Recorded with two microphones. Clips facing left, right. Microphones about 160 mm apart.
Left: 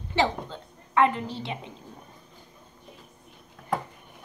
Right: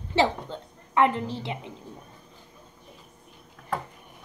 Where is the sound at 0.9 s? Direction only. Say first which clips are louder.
Even; 20° right (ahead or behind).